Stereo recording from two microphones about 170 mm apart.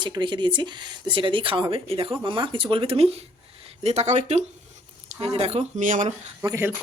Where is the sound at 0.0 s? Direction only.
25° right (ahead or behind); by 6.1 s 50° right (ahead or behind).